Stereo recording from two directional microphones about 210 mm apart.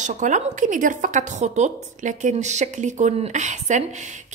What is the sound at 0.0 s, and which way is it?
A woman's voice, 35° right (ahead or behind).